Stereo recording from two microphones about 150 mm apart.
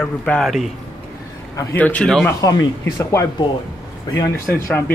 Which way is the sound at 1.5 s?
10° left (ahead or behind).